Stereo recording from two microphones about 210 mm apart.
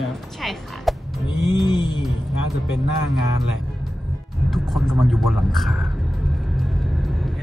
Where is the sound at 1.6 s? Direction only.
20° left (ahead or behind).